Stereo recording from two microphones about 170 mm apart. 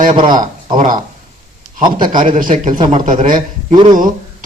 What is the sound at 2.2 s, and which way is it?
Speech, 45° right (ahead or behind).